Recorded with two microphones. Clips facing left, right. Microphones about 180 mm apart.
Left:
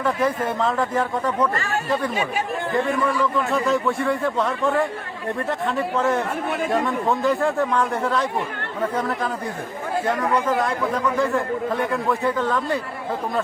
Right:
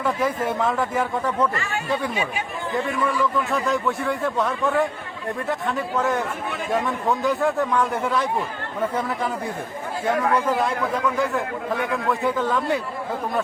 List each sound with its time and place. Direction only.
0.0 s a man's voice: 5° right (ahead or behind)
1.5 s speech: 40° left (ahead or behind)
3.3 s a man's voice: centre (ahead or behind)
10.4 s a man's voice: 10° right (ahead or behind)